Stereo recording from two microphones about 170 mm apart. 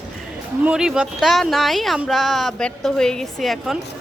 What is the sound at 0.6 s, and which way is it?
Speech, 5° right (ahead or behind).